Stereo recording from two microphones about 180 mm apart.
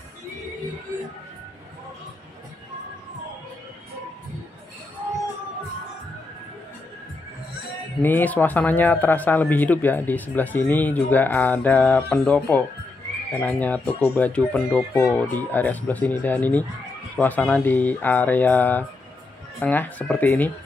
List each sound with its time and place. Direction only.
8.0 s speech: 10° left (ahead or behind)